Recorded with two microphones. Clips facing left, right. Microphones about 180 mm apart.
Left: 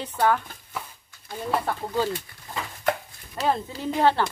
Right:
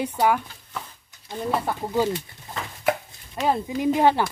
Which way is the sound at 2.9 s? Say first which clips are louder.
Right 2 dB; 5° right (ahead or behind).